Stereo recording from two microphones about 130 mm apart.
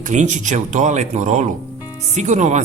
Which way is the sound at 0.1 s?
70° right (ahead or behind).